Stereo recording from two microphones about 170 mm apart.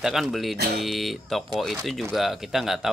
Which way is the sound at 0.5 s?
70° right (ahead or behind).